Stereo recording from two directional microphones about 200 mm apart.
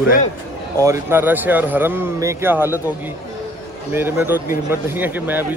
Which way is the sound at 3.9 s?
10° right (ahead or behind).